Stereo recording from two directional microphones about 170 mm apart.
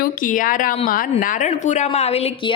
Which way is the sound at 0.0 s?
55° left (ahead or behind).